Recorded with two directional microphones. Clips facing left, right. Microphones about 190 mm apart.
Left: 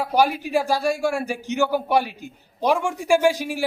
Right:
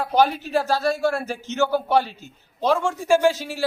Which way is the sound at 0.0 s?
10° left (ahead or behind).